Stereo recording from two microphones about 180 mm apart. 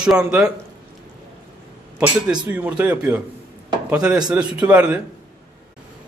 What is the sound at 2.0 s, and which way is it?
A man's voice, 10° right (ahead or behind).